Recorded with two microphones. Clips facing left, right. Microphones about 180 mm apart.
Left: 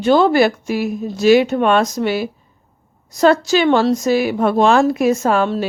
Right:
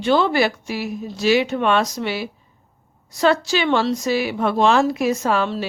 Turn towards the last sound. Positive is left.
turn(degrees=50)  # may be behind; listen again after turning